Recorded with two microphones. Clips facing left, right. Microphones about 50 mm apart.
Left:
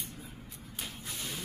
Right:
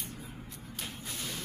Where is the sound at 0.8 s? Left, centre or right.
Centre.